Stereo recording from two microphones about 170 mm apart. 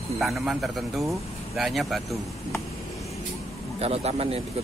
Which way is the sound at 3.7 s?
40° right (ahead or behind).